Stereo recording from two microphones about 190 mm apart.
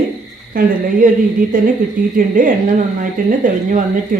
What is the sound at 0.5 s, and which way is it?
Speech, 50° right (ahead or behind).